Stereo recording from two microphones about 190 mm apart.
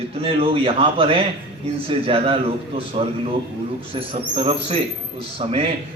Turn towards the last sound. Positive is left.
turn(degrees=-30)  # may be behind; listen again after turning